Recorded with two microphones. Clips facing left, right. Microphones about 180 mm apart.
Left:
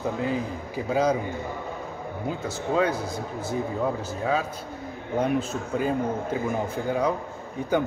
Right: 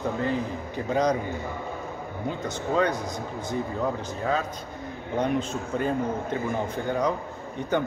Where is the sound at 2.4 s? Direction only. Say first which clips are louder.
Even; 5° left (ahead or behind).